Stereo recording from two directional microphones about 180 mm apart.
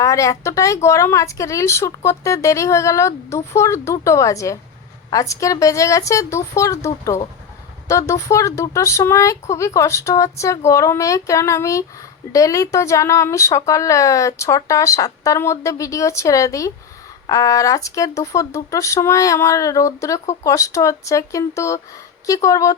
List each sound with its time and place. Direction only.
0.0 s speech: 15° left (ahead or behind)